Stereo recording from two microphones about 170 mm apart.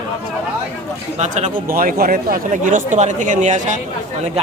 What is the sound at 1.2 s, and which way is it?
Speech, 45° right (ahead or behind).